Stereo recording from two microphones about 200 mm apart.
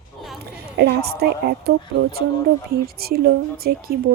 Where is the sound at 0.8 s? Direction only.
55° right (ahead or behind).